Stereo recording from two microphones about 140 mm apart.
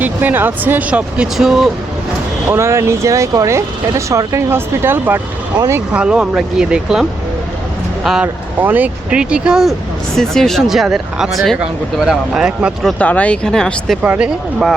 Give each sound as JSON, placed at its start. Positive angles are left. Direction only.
{"t": 0.0, "sound": "speech", "side_deg": -15}
{"t": 2.5, "sound": "speech", "side_deg": -20}
{"t": 5.9, "sound": "speech", "side_deg": -5}
{"t": 13.0, "sound": "speech", "side_deg": 10}
{"t": 14.0, "sound": "speech", "side_deg": -10}